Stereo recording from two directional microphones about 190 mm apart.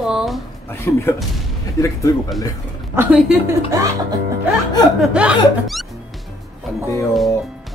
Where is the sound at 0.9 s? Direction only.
15° left (ahead or behind).